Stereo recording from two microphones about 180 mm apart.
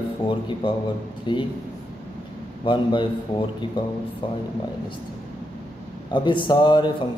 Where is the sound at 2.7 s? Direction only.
25° left (ahead or behind).